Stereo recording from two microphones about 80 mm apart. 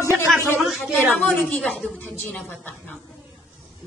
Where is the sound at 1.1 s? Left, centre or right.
Centre.